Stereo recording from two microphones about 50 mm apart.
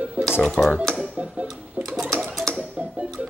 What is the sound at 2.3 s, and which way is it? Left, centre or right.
Mechanisms, centre.